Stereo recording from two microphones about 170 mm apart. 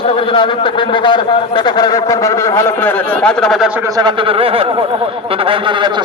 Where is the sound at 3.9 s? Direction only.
30° right (ahead or behind).